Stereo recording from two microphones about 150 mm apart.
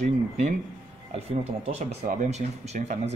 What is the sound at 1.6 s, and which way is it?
Speech, 55° right (ahead or behind).